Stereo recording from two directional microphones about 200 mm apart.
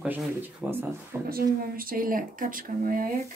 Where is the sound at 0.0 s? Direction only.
5° right (ahead or behind).